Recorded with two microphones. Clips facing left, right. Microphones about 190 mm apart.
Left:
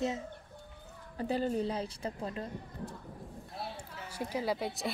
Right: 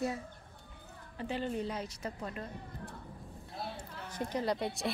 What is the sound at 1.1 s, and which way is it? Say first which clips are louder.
A woman's voice: left 4 dB; 40° left (ahead or behind).